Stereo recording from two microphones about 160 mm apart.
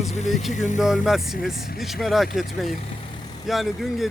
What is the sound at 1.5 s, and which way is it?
Speech, 70° left (ahead or behind).